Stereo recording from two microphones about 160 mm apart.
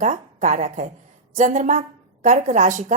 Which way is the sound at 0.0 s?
50° right (ahead or behind).